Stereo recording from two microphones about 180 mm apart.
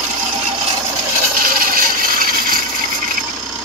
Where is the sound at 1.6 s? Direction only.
50° right (ahead or behind).